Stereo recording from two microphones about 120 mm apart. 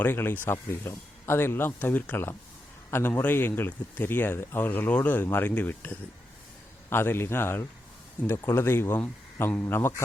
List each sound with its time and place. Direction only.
0.0 s speech: 20° left (ahead or behind)